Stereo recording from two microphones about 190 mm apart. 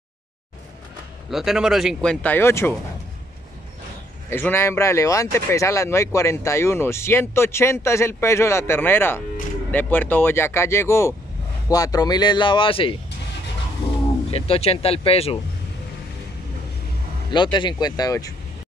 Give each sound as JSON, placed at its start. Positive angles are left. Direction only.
{"t": 1.3, "sound": "speech", "side_deg": 0}
{"t": 4.3, "sound": "speech", "side_deg": 10}
{"t": 14.3, "sound": "speech", "side_deg": 30}
{"t": 17.3, "sound": "speech", "side_deg": 25}